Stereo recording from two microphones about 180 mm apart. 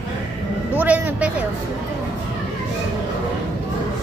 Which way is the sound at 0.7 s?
10° right (ahead or behind).